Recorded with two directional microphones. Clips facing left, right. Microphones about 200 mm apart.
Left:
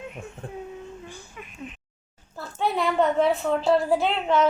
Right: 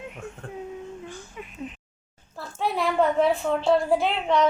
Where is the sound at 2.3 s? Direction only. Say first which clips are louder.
Left 1 dB; centre (ahead or behind).